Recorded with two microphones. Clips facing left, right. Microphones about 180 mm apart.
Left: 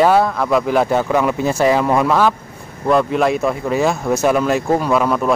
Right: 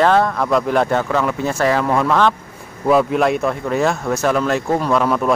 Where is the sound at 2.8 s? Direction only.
Centre (ahead or behind).